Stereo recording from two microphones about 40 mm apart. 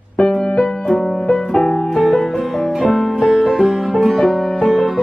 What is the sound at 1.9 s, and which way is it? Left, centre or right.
Music, centre.